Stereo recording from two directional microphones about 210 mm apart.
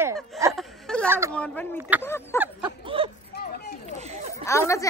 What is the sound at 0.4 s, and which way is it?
Whimper, 15° right (ahead or behind).